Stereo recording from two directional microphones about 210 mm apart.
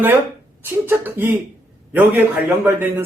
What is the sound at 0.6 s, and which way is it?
A man's voice, 10° right (ahead or behind).